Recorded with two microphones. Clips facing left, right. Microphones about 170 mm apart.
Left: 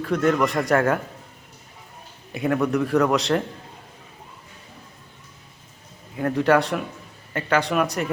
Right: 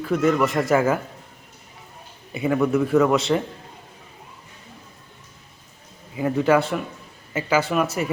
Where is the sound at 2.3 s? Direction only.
Centre (ahead or behind).